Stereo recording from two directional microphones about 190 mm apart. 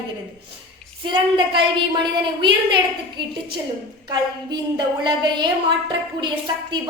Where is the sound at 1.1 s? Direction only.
25° right (ahead or behind).